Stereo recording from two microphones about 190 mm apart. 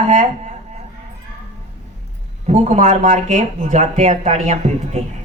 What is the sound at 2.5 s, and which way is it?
Speech, 40° right (ahead or behind).